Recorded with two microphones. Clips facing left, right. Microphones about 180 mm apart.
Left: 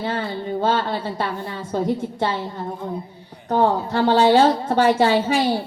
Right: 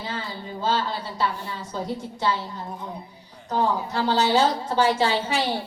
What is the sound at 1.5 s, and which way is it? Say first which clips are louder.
A woman's voice: left 7 dB; 60° left (ahead or behind).